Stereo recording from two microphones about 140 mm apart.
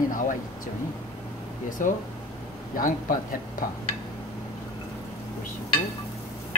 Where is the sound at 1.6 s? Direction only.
70° left (ahead or behind).